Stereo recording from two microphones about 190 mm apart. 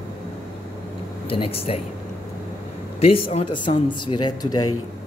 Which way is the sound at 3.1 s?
30° left (ahead or behind).